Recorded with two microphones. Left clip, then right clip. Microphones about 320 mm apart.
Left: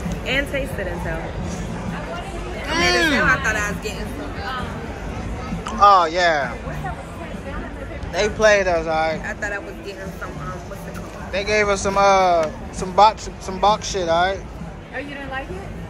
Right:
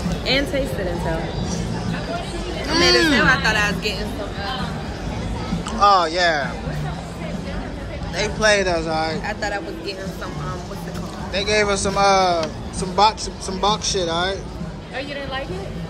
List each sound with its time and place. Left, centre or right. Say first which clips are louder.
2.7 s speech: right 2 dB; centre
3.3 s speech: right 2 dB; right
5.8 s speech: left 2 dB; centre
8.1 s speech: left 2 dB; centre
9.2 s speech: right 2 dB; right
11.3 s speech: even; centre